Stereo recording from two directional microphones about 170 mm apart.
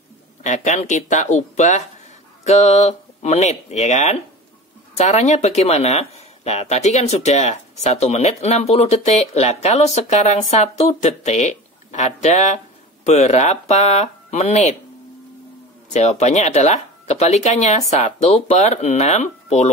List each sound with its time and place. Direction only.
0.4 s speech: 45° left (ahead or behind)
15.9 s speech: 40° left (ahead or behind)